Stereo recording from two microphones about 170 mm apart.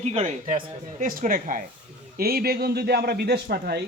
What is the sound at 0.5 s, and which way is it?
Speech, 55° right (ahead or behind).